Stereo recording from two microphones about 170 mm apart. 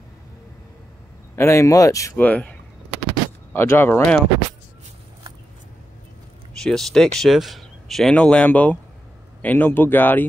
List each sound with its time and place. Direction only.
1.3 s speech: 15° left (ahead or behind)
2.2 s speech: 10° left (ahead or behind)
3.5 s speech: 15° left (ahead or behind)
6.6 s speech: centre (ahead or behind)